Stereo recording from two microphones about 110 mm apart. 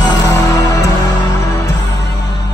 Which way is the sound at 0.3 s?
30° left (ahead or behind).